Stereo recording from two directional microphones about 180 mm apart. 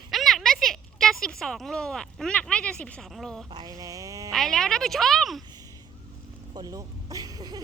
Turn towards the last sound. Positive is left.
turn(degrees=-20)  # may be behind; listen again after turning